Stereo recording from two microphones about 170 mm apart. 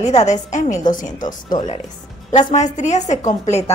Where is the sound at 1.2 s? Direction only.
25° left (ahead or behind).